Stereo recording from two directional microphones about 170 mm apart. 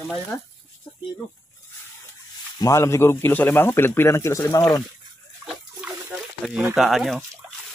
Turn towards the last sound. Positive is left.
turn(degrees=0)  # may be behind; listen again after turning